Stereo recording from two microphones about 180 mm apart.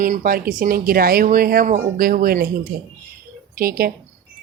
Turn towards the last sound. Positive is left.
turn(degrees=-55)  # may be behind; listen again after turning